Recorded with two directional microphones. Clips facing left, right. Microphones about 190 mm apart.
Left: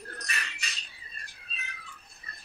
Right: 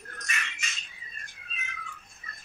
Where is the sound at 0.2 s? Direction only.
35° left (ahead or behind).